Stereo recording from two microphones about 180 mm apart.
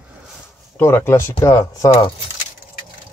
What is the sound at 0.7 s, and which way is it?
Speech, 15° left (ahead or behind).